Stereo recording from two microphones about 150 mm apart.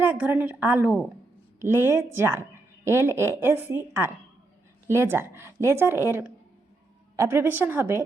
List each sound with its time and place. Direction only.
0.0 s speech: 10° right (ahead or behind)